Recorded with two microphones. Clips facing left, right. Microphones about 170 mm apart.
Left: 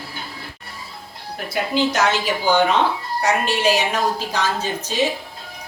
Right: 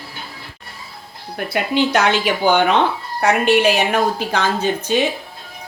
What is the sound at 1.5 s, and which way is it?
A woman's voice, 60° right (ahead or behind).